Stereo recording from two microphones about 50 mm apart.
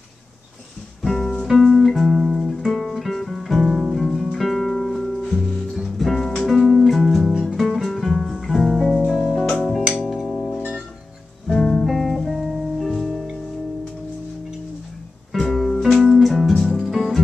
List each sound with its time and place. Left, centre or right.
1.0 s music: centre
11.4 s music: centre
11.8 s music: centre
12.4 s music: centre
15.3 s music: centre